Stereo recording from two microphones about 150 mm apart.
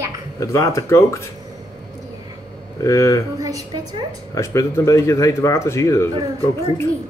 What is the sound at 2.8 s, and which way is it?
Speech, 20° left (ahead or behind).